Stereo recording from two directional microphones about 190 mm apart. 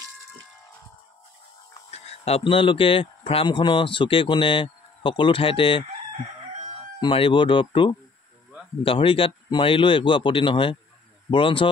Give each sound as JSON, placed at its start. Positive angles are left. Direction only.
{"t": 1.9, "sound": "speech", "side_deg": 35}
{"t": 7.0, "sound": "speech", "side_deg": 25}